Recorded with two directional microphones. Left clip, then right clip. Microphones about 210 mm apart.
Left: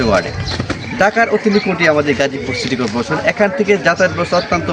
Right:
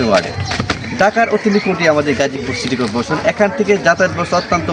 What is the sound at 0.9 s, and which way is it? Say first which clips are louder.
Speech: even; centre (ahead or behind).